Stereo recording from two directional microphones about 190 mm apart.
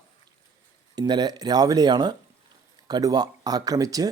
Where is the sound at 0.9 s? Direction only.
20° right (ahead or behind).